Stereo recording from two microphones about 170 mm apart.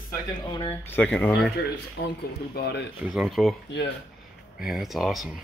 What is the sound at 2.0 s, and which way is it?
Speech, 65° left (ahead or behind).